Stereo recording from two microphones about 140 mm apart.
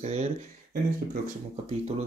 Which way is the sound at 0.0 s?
50° right (ahead or behind).